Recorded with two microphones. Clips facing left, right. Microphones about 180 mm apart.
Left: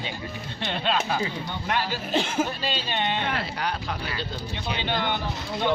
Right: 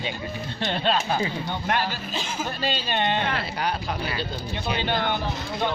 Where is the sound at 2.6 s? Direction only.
45° right (ahead or behind).